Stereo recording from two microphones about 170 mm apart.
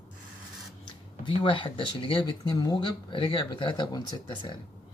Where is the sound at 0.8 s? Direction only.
30° left (ahead or behind).